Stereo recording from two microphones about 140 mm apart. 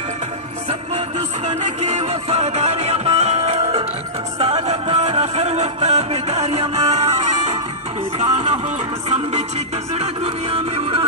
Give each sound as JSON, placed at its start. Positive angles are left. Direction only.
{"t": 1.6, "sound": "music", "side_deg": -55}
{"t": 9.9, "sound": "music", "side_deg": -45}